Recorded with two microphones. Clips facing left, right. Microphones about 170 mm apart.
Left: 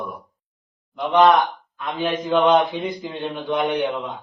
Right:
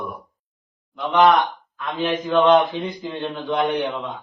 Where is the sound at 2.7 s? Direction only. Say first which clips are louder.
Even; 15° left (ahead or behind).